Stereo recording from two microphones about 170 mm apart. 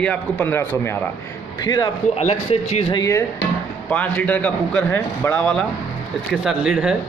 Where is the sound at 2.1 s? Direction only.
35° left (ahead or behind).